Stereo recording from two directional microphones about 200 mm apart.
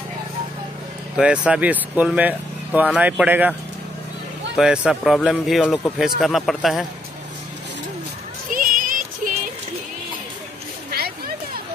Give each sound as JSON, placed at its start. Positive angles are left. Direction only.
{"t": 1.1, "sound": "speech", "side_deg": -5}
{"t": 4.6, "sound": "speech", "side_deg": -5}
{"t": 8.5, "sound": "a sound", "side_deg": -45}